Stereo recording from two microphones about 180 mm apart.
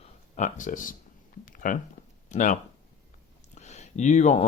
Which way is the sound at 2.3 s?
45° left (ahead or behind).